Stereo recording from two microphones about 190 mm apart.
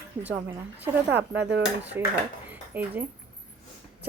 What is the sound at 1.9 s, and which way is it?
A woman's voice, 10° right (ahead or behind).